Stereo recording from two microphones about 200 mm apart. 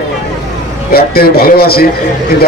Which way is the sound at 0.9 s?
50° left (ahead or behind).